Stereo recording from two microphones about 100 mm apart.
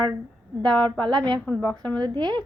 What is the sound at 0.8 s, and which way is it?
Speech, 50° right (ahead or behind).